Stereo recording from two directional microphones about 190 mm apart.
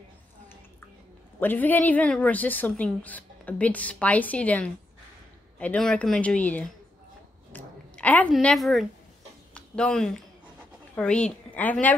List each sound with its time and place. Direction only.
1.4 s a woman's voice: 10° left (ahead or behind)